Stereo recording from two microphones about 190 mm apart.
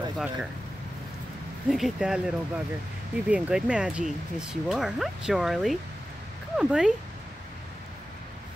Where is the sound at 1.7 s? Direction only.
Centre (ahead or behind).